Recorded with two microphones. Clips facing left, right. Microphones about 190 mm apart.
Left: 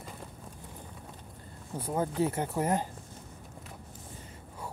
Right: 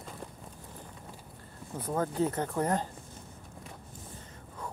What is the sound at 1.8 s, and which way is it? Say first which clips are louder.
Speech: even; 10° left (ahead or behind).